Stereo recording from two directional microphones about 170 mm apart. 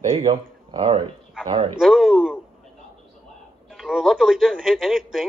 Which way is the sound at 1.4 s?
30° right (ahead or behind).